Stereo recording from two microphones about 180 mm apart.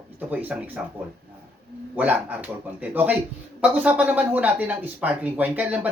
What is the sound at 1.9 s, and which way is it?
Speech, 10° right (ahead or behind).